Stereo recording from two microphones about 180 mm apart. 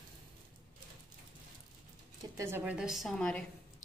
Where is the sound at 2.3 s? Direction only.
15° right (ahead or behind); by 3.8 s 5° left (ahead or behind).